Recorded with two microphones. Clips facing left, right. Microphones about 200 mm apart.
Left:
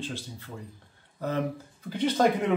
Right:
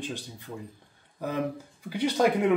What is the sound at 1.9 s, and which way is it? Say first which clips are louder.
Speech: left 1 dB; 10° right (ahead or behind).